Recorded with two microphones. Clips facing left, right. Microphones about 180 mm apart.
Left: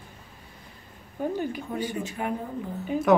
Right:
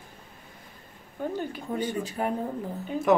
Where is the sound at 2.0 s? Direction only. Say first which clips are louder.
Right 2 dB; 35° right (ahead or behind).